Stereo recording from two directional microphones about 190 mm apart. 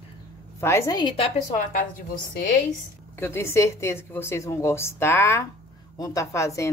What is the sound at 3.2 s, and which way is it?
A woman's voice, 10° left (ahead or behind).